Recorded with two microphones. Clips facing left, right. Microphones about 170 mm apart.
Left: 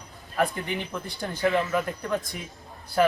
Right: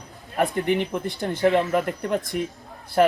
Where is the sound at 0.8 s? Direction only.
20° right (ahead or behind).